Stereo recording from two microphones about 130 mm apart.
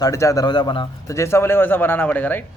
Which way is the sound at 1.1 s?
20° left (ahead or behind).